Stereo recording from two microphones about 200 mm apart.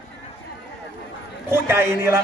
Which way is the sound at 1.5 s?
10° right (ahead or behind).